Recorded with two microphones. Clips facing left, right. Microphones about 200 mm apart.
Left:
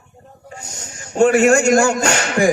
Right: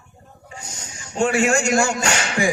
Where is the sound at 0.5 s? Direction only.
60° left (ahead or behind).